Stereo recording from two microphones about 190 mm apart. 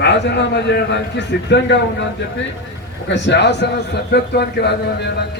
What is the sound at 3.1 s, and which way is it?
A man's voice, 65° left (ahead or behind).